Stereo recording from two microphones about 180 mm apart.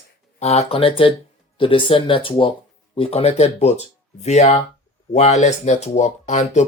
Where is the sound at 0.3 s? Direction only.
35° left (ahead or behind).